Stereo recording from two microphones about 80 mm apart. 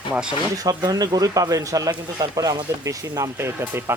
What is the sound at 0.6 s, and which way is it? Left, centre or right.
Speech, right.